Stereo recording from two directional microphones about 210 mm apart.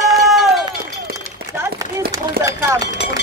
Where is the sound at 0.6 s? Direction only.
15° right (ahead or behind).